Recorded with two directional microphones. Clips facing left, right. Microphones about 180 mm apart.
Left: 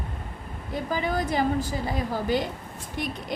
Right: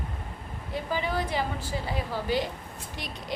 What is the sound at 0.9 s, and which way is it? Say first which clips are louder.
A woman's voice: left 3 dB; 45° left (ahead or behind).